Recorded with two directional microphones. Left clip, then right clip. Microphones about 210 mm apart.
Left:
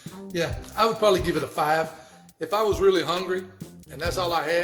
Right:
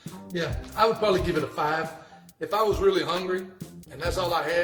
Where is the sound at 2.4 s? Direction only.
45° left (ahead or behind).